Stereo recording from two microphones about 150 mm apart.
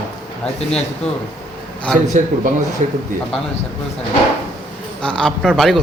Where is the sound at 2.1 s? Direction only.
50° right (ahead or behind).